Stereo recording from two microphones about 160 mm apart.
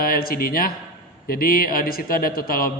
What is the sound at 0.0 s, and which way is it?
A man's voice, 65° left (ahead or behind).